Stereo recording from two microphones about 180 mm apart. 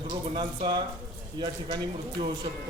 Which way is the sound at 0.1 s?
25° right (ahead or behind).